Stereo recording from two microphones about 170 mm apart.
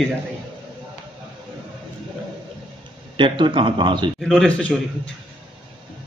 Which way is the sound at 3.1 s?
30° right (ahead or behind).